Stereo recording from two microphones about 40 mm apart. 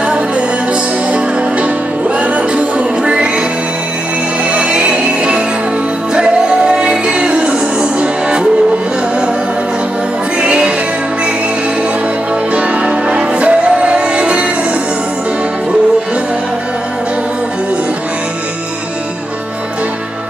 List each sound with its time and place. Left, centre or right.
1.1 s music: right
4.5 s music: right
10.4 s music: right
12.5 s music: right